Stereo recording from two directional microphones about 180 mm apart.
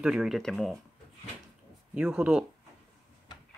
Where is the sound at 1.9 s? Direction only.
5° right (ahead or behind).